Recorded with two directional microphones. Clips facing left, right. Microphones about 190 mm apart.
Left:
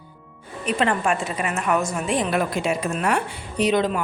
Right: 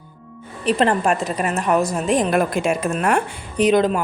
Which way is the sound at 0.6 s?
35° right (ahead or behind).